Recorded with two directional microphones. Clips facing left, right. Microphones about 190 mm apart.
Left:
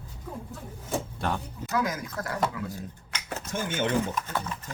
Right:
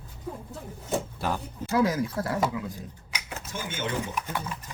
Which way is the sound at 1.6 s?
30° right (ahead or behind).